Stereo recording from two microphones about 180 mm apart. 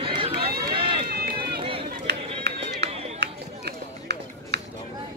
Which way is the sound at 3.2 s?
70° right (ahead or behind).